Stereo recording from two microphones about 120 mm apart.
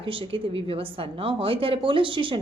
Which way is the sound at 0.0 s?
45° right (ahead or behind).